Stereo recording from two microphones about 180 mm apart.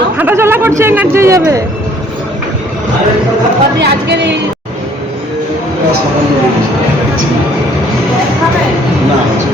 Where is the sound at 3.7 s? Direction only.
70° right (ahead or behind).